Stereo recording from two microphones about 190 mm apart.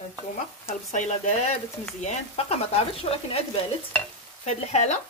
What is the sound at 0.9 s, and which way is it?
Speech, 35° left (ahead or behind).